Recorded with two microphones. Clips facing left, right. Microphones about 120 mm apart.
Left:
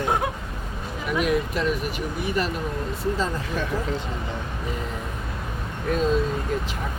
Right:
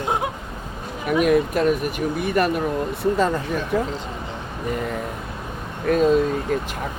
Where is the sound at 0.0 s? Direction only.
20° right (ahead or behind).